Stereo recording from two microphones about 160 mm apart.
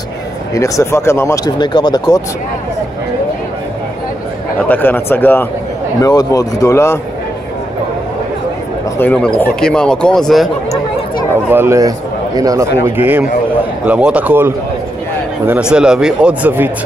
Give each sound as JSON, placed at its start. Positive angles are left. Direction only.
{"t": 0.6, "sound": "speech", "side_deg": 20}
{"t": 4.6, "sound": "speech", "side_deg": 10}
{"t": 8.9, "sound": "speech", "side_deg": 10}
{"t": 11.4, "sound": "speech", "side_deg": -15}
{"t": 15.7, "sound": "speech", "side_deg": -5}